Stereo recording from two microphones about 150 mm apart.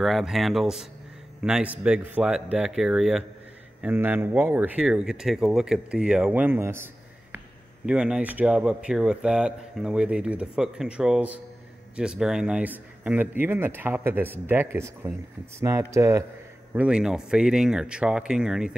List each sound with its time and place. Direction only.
0.0 s speech: centre (ahead or behind)
3.8 s speech: 15° right (ahead or behind)
16.7 s speech: 5° right (ahead or behind)